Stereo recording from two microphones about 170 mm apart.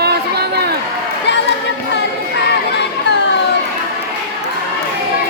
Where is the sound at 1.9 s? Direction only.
90° left.